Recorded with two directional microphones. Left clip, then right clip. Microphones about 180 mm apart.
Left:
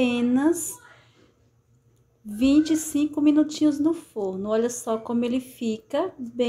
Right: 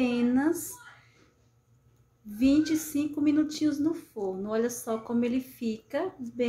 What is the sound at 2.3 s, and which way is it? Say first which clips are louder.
A woman's voice: left 4 dB; 20° left (ahead or behind).